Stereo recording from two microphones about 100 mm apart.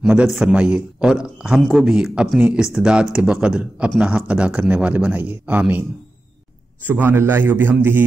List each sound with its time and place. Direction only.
0.3 s a man's voice: 5° right (ahead or behind); by 7.7 s 20° right (ahead or behind)